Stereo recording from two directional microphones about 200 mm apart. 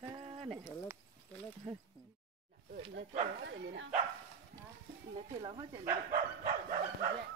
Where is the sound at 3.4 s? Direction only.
65° right (ahead or behind).